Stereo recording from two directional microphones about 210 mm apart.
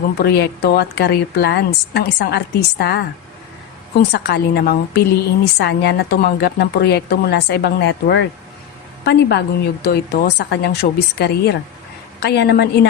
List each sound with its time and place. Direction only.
0.2 s speech: 50° left (ahead or behind)